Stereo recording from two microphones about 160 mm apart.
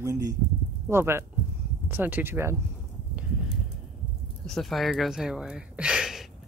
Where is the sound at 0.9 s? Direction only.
15° right (ahead or behind).